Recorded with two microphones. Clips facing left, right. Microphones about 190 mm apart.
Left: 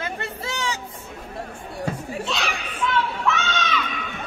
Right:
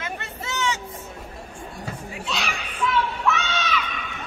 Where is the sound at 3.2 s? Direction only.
Centre (ahead or behind).